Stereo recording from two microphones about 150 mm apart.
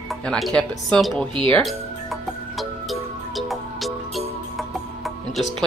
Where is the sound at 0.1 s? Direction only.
5° left (ahead or behind).